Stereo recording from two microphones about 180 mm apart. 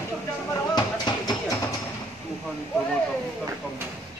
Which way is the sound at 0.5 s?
20° left (ahead or behind).